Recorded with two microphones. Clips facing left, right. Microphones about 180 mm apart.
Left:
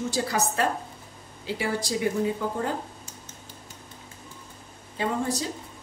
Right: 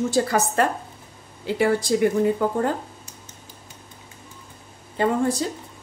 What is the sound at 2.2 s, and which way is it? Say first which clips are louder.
Speech: right 6 dB; 55° right (ahead or behind).